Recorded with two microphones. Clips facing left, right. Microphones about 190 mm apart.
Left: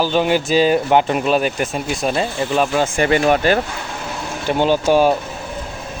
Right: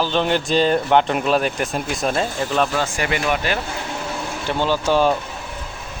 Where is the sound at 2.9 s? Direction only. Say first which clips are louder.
Left 7 dB; 30° left (ahead or behind).